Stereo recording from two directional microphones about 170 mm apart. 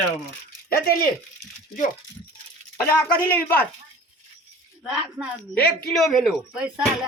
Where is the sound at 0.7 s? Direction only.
65° left (ahead or behind).